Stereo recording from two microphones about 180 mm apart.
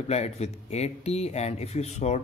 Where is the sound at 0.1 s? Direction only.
35° left (ahead or behind).